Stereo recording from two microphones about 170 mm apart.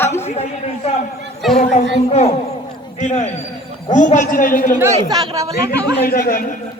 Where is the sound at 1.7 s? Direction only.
35° left (ahead or behind).